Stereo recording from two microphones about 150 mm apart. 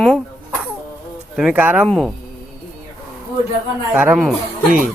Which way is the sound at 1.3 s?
10° right (ahead or behind).